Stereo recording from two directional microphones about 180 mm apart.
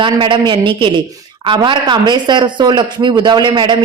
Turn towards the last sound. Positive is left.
turn(degrees=-25)  # may be behind; listen again after turning